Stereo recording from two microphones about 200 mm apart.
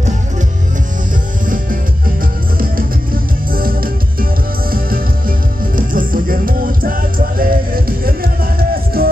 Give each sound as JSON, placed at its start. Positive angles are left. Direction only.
{"t": 3.5, "sound": "music", "side_deg": -45}